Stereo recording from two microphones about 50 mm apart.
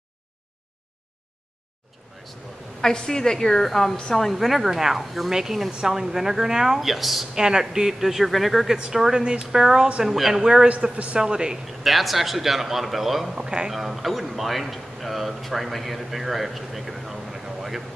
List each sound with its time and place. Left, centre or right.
2.8 s a woman's voice: centre
7.3 s a woman's voice: centre
10.7 s a man's voice: right
11.1 s a woman's voice: centre
11.8 s speech: centre